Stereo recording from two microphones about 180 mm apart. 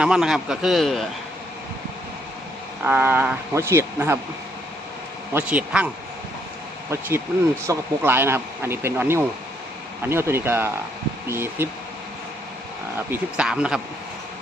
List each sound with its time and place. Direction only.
0.0 s a man's voice: 5° right (ahead or behind)
2.8 s speech: 10° right (ahead or behind)
5.3 s speech: 10° right (ahead or behind)
7.7 s speech: 10° right (ahead or behind)
13.1 s a man's voice: 5° right (ahead or behind)